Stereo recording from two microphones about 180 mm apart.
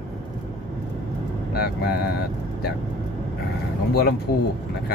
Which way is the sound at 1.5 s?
60° left (ahead or behind).